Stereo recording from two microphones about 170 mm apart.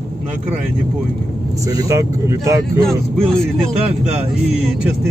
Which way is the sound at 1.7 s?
20° right (ahead or behind).